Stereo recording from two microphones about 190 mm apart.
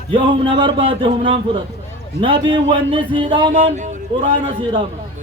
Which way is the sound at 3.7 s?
40° right (ahead or behind).